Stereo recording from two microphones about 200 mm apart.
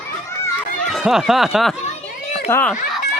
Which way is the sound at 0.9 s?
Centre (ahead or behind).